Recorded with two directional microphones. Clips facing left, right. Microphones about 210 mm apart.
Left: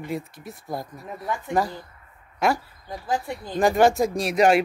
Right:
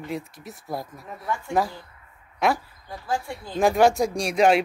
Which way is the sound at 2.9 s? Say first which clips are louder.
Left 2 dB; 20° left (ahead or behind).